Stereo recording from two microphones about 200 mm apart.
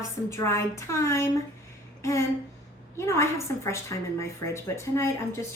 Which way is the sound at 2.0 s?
15° left (ahead or behind).